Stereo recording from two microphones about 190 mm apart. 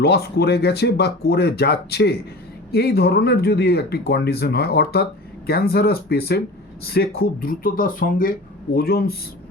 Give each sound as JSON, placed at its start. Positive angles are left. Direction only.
{"t": 0.0, "sound": "speech", "side_deg": 55}